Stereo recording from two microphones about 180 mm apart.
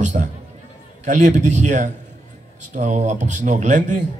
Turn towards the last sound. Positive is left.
turn(degrees=-45)  # may be behind; listen again after turning